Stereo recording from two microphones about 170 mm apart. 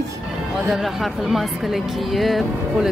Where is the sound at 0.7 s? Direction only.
Centre (ahead or behind).